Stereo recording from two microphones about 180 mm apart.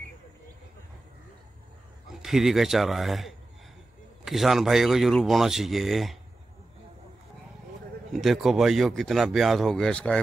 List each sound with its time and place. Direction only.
2.0 s speech: centre (ahead or behind)
8.1 s speech: centre (ahead or behind)